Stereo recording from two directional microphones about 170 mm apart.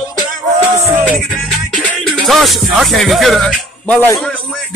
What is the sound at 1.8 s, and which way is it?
Music, centre (ahead or behind).